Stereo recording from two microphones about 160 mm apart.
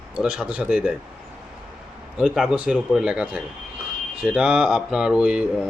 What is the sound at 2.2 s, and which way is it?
Speech, 5° right (ahead or behind).